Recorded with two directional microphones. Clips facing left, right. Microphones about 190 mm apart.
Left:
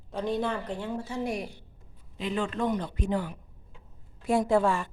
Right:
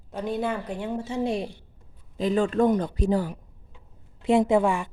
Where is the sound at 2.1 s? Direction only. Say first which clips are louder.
Right 8 dB; 40° right (ahead or behind).